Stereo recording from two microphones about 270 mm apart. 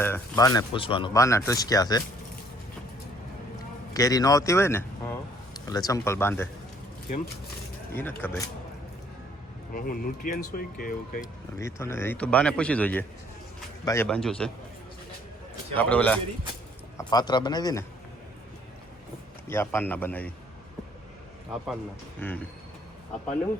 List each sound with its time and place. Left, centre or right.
0.0 s speech: centre
3.9 s speech: centre
7.9 s speech: centre
9.7 s speech: left
11.5 s speech: centre
15.7 s speech: centre
19.5 s speech: centre
22.2 s speech: centre